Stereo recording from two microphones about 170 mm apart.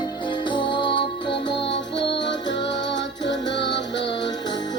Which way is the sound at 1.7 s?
90° left.